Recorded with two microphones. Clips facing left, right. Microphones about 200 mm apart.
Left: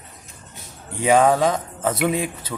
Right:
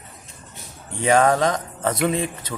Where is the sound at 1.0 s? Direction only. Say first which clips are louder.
Left 1 dB; 5° left (ahead or behind).